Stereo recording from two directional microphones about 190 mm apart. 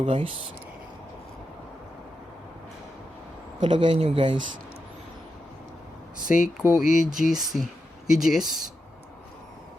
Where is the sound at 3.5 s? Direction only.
25° right (ahead or behind).